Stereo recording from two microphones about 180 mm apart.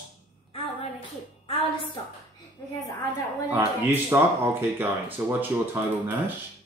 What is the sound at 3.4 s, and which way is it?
Speech, 10° right (ahead or behind).